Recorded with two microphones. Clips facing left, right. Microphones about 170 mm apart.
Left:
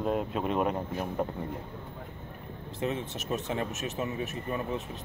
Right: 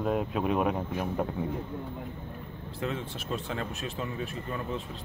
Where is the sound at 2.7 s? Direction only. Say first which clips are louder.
Left 2 dB; 20° left (ahead or behind).